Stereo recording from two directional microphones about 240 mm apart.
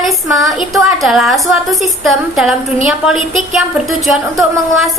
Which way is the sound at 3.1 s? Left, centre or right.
Right.